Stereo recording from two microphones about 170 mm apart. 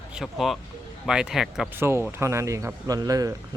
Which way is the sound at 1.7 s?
15° right (ahead or behind).